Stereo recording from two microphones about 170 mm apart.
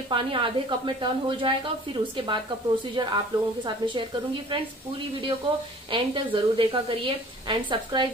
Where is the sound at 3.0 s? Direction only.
25° right (ahead or behind).